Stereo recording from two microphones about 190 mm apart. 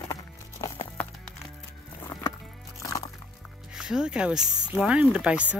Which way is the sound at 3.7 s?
5° right (ahead or behind).